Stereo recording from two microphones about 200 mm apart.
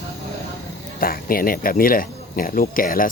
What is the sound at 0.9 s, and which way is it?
Speech, 45° left (ahead or behind).